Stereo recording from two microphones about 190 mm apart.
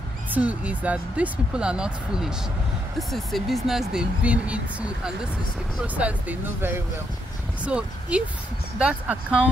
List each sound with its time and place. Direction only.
0.3 s speech: 10° right (ahead or behind)